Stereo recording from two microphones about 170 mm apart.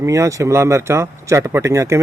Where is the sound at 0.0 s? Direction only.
20° right (ahead or behind).